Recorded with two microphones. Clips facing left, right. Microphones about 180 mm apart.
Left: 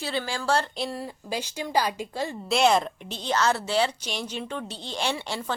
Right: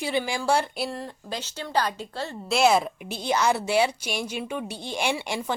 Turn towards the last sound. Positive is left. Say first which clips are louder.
# right 2 dB
turn(degrees=-15)  # may be behind; listen again after turning